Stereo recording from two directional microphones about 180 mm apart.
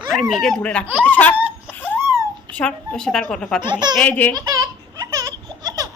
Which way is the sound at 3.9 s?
10° left (ahead or behind).